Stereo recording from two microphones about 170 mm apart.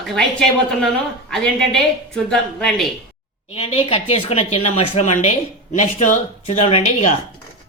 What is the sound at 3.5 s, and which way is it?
Speech, 35° left (ahead or behind).